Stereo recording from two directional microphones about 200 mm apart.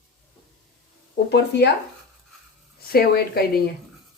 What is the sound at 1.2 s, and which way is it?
Speech, 60° left (ahead or behind).